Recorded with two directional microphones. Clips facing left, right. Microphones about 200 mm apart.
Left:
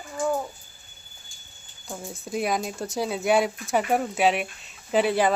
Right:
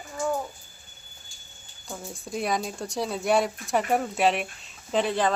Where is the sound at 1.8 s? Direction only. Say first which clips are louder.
Left 2 dB; 5° left (ahead or behind).